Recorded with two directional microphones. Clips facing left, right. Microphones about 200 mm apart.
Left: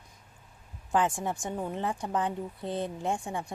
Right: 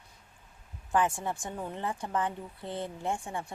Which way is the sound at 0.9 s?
15° left (ahead or behind).